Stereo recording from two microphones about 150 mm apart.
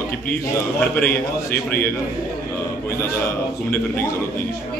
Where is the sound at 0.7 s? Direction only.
10° left (ahead or behind).